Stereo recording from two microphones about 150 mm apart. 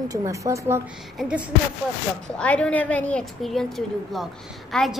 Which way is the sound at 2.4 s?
10° left (ahead or behind).